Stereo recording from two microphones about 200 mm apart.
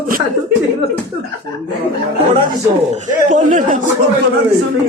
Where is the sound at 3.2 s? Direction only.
40° right (ahead or behind).